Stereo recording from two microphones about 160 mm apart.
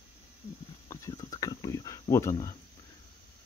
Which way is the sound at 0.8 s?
20° left (ahead or behind).